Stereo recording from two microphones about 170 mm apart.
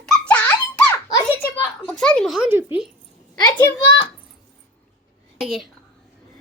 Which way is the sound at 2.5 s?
10° right (ahead or behind).